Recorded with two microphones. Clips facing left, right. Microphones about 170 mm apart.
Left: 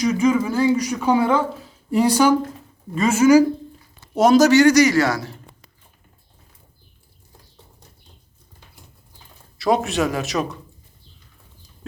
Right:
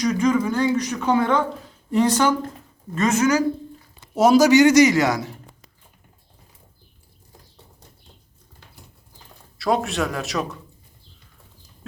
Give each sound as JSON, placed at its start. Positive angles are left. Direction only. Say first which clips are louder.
{"t": 0.0, "sound": "speech", "louder": "left 1 dB", "side_deg": 5}
{"t": 4.1, "sound": "speech", "louder": "left 1 dB", "side_deg": -5}
{"t": 9.6, "sound": "a man's voice", "louder": "left 2 dB", "side_deg": 0}